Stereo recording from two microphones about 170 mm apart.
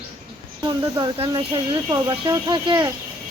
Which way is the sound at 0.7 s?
25° right (ahead or behind).